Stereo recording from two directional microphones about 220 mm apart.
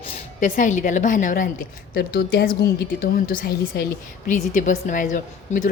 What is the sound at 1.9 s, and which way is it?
A woman's voice, 50° left (ahead or behind).